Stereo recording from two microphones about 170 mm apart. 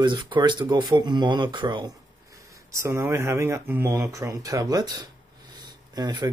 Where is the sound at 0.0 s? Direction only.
25° right (ahead or behind).